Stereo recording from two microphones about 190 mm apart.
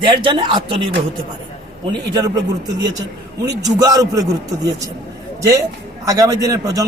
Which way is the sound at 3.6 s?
20° right (ahead or behind).